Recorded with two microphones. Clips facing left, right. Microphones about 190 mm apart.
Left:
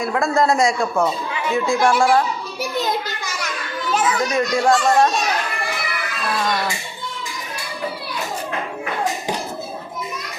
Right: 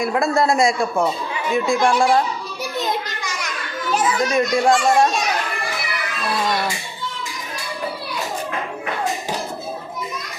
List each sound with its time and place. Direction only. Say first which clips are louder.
0.0 s a man's voice: even; 15° right (ahead or behind)
4.2 s a man's voice: right 1 dB; 15° right (ahead or behind)